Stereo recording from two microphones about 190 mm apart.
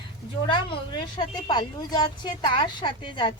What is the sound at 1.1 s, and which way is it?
A woman's voice, 20° left (ahead or behind).